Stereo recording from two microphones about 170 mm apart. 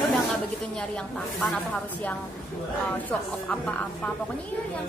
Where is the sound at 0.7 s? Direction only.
5° left (ahead or behind).